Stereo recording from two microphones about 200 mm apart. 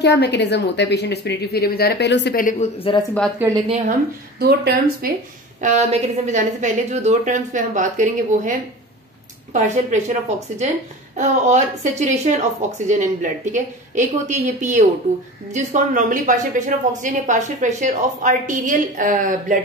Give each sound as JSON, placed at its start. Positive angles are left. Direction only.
{"t": 0.0, "sound": "a woman's voice", "side_deg": 60}
{"t": 2.4, "sound": "a woman's voice", "side_deg": 30}
{"t": 3.4, "sound": "a woman's voice", "side_deg": -10}
{"t": 4.4, "sound": "speech", "side_deg": -50}
{"t": 5.6, "sound": "a woman's voice", "side_deg": -35}